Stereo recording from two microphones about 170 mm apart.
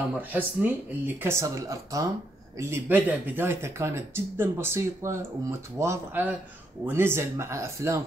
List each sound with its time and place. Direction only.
0.3 s speech: 10° right (ahead or behind)